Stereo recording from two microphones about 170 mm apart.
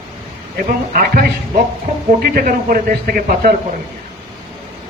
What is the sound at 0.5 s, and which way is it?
A man's voice, 60° right (ahead or behind).